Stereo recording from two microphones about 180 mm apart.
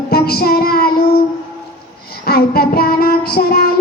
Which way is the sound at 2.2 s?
60° left (ahead or behind).